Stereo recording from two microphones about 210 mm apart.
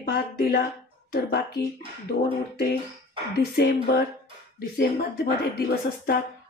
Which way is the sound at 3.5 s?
50° left (ahead or behind).